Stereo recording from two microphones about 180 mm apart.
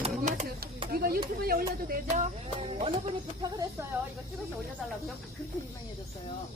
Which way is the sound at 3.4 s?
20° right (ahead or behind).